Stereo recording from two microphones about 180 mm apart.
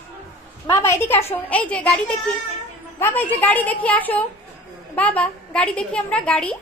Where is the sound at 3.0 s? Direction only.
10° left (ahead or behind).